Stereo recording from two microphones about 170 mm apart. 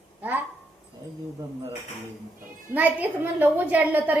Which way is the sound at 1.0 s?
20° right (ahead or behind).